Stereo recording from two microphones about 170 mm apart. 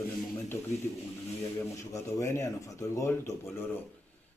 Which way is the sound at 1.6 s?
15° left (ahead or behind).